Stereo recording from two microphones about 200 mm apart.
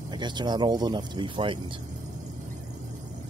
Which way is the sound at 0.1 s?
20° right (ahead or behind).